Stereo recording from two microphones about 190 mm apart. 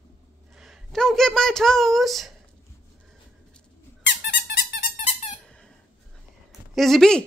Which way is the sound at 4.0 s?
65° left (ahead or behind).